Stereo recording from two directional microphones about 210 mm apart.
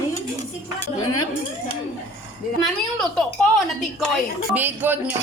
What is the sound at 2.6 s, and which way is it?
Speech, centre (ahead or behind).